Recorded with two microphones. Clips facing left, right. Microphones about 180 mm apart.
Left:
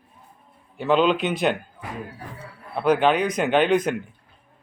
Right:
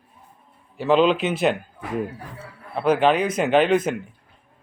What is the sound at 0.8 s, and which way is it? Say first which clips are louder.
Speech: right 2 dB; centre (ahead or behind).